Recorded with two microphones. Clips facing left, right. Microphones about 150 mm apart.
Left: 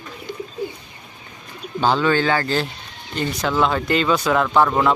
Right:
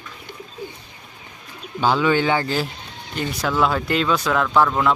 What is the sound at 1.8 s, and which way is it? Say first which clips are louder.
Speech: even; 10° right (ahead or behind).